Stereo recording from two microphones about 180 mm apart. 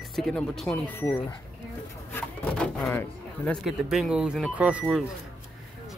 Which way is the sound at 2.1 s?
5° left (ahead or behind).